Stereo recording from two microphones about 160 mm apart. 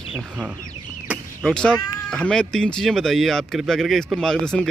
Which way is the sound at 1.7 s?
25° left (ahead or behind).